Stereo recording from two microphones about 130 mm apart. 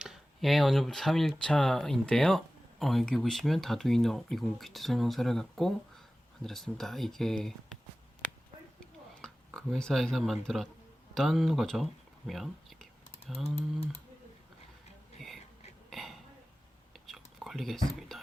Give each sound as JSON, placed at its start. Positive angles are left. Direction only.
{"t": 0.0, "sound": "speech", "side_deg": 0}
{"t": 9.2, "sound": "speech", "side_deg": 5}
{"t": 12.3, "sound": "whispering", "side_deg": 0}
{"t": 13.4, "sound": "speech", "side_deg": 55}
{"t": 15.2, "sound": "a sound", "side_deg": 0}
{"t": 15.9, "sound": "burping", "side_deg": 0}
{"t": 16.9, "sound": "chewing", "side_deg": 0}